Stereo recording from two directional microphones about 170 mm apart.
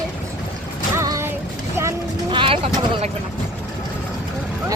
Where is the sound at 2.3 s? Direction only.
30° right (ahead or behind).